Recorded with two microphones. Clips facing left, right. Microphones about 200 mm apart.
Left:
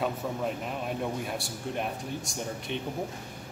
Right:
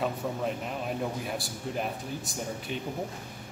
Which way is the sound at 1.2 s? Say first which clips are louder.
Even; centre (ahead or behind).